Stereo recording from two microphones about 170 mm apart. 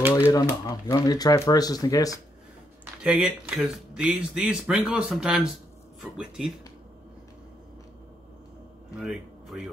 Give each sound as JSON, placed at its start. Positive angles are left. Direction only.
{"t": 0.3, "sound": "speech", "side_deg": 20}
{"t": 2.8, "sound": "speech", "side_deg": -5}
{"t": 8.9, "sound": "speech", "side_deg": -5}